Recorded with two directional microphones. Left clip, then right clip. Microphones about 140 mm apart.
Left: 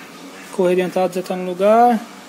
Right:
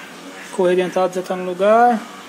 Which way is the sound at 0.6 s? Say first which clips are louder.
Even; 25° left (ahead or behind).